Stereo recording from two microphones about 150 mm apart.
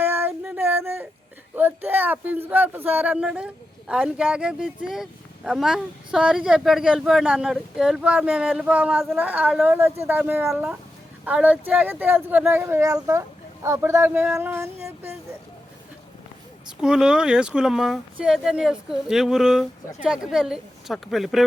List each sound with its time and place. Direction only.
0.0 s female singing: 15° right (ahead or behind)
1.5 s speech: 15° right (ahead or behind)
16.6 s speech: 5° right (ahead or behind)